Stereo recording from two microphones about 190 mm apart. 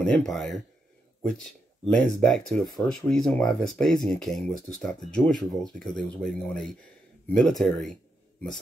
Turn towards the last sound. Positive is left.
turn(degrees=0)  # may be behind; listen again after turning